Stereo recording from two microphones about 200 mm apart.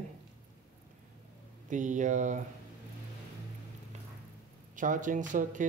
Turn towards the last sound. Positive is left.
turn(degrees=-40)  # may be behind; listen again after turning